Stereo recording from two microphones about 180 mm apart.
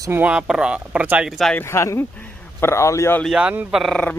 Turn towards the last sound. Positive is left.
turn(degrees=0)  # may be behind; listen again after turning